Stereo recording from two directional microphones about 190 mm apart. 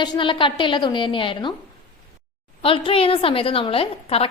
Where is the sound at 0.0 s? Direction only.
25° left (ahead or behind).